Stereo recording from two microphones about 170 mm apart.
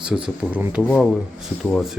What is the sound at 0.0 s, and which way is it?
Speech, 5° right (ahead or behind).